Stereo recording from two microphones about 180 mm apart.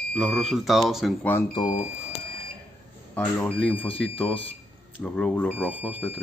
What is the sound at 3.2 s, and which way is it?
Speech, 5° left (ahead or behind).